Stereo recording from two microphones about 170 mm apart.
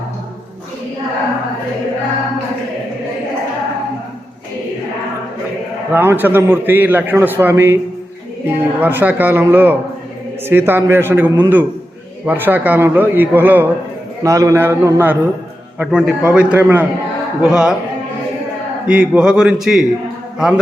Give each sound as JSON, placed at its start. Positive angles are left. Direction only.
{"t": 5.9, "sound": "a man's voice", "side_deg": -10}
{"t": 18.9, "sound": "a man's voice", "side_deg": -5}